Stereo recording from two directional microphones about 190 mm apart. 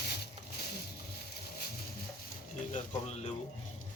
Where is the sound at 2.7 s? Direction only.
40° left (ahead or behind).